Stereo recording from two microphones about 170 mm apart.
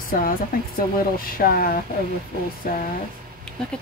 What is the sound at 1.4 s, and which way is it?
Speech, 60° left (ahead or behind).